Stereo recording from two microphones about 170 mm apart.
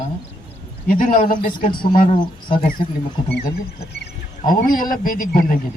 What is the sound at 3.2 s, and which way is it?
Speech, 25° left (ahead or behind).